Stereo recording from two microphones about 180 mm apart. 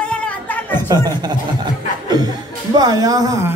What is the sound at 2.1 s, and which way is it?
Speech, 25° right (ahead or behind).